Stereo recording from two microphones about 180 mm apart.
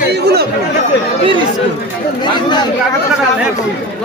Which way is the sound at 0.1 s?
65° right (ahead or behind).